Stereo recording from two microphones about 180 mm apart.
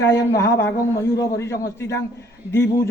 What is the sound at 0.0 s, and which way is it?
A man's voice, 15° left (ahead or behind).